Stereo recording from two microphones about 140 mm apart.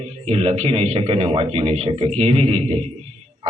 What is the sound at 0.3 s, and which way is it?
A man's voice, 45° right (ahead or behind).